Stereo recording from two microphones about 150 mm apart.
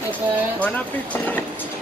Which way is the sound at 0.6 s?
10° left (ahead or behind).